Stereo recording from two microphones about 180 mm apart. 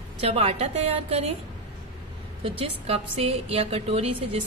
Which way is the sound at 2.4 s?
30° right (ahead or behind).